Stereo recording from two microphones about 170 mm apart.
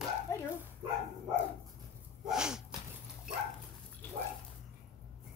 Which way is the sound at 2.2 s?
5° right (ahead or behind).